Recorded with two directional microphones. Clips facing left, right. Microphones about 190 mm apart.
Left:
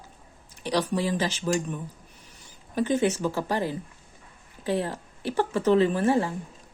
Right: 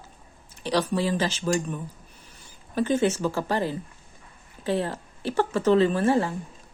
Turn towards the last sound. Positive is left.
turn(degrees=15)  # may be behind; listen again after turning